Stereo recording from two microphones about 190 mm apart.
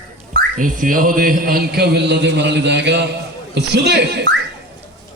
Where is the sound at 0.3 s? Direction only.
45° right (ahead or behind); by 4.3 s 60° right (ahead or behind).